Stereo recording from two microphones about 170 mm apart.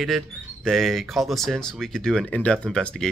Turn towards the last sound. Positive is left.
turn(degrees=5)  # may be behind; listen again after turning